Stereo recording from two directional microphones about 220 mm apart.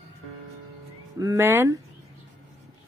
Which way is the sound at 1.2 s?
10° right (ahead or behind).